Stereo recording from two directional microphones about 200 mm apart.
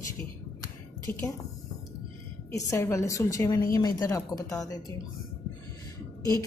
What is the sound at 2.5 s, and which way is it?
A woman's voice, 15° left (ahead or behind).